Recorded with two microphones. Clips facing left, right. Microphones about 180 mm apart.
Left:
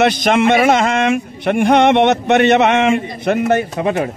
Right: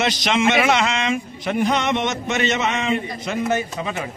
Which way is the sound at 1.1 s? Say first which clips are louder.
Left 6 dB; 65° left (ahead or behind).